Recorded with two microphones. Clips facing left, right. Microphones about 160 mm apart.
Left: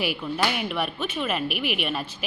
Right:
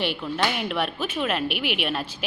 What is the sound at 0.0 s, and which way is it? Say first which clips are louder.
A woman's voice: even; 5° left (ahead or behind).